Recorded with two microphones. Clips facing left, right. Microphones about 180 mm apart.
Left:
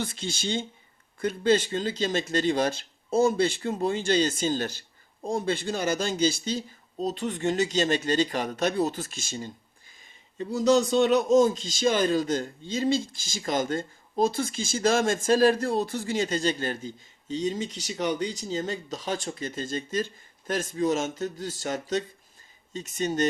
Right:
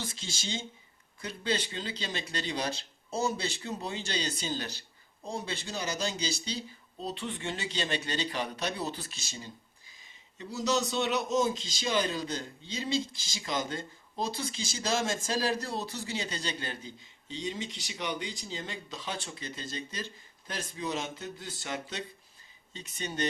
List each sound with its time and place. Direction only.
0.0 s a man's voice: 60° left (ahead or behind)